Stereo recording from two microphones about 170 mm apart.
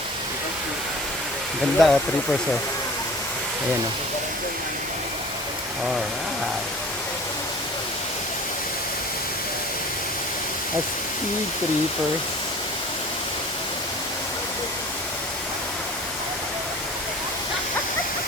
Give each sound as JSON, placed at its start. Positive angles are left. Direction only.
{"t": 1.8, "sound": "speech", "side_deg": 0}